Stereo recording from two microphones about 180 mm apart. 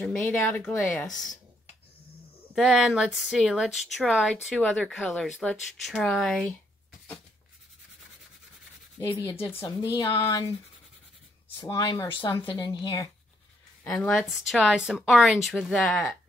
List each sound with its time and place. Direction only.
0.0 s speech: 10° left (ahead or behind)
2.5 s speech: centre (ahead or behind)
9.0 s speech: 30° left (ahead or behind)
11.6 s speech: 20° left (ahead or behind)
13.8 s speech: 5° left (ahead or behind)